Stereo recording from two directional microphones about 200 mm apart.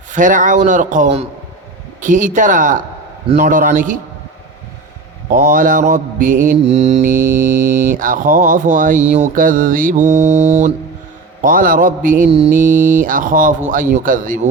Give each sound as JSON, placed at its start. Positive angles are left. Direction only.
{"t": 0.1, "sound": "mantra", "side_deg": -40}
{"t": 5.3, "sound": "mantra", "side_deg": -45}
{"t": 7.0, "sound": "mantra", "side_deg": -10}
{"t": 7.9, "sound": "mantra", "side_deg": -45}
{"t": 11.4, "sound": "a man's voice", "side_deg": -45}
{"t": 12.5, "sound": "mantra", "side_deg": -10}
{"t": 13.1, "sound": "mantra", "side_deg": -40}